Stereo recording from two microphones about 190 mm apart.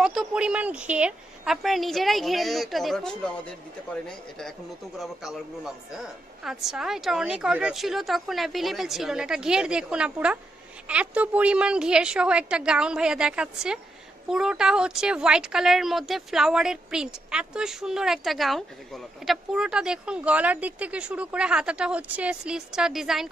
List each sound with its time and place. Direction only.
0.0 s a man's voice: centre (ahead or behind)
4.4 s a man's voice: centre (ahead or behind)